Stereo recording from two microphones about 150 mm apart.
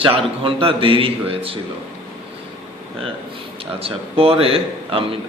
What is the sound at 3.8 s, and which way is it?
A man's voice, 40° right (ahead or behind).